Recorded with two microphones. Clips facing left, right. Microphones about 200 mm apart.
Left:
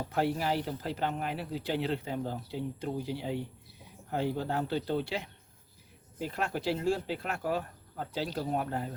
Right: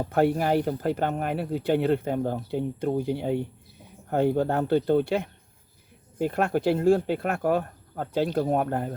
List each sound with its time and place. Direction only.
0.0 s speech: 55° right (ahead or behind)